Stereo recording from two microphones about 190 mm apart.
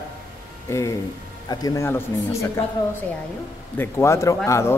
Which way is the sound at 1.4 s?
15° left (ahead or behind).